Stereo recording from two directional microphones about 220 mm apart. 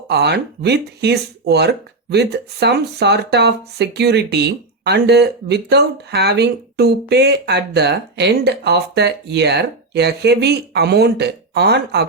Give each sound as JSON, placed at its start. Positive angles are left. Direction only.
{"t": 0.1, "sound": "speech", "side_deg": -50}